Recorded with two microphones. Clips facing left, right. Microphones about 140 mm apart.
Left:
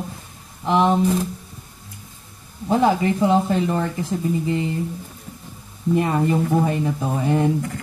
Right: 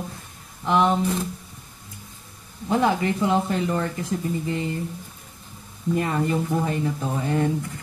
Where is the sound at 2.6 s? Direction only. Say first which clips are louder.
Left 3 dB; 25° left (ahead or behind).